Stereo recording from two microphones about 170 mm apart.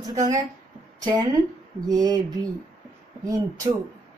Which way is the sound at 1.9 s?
20° right (ahead or behind).